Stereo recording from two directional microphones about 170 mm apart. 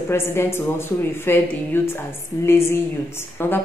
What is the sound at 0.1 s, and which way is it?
Speech, 15° left (ahead or behind).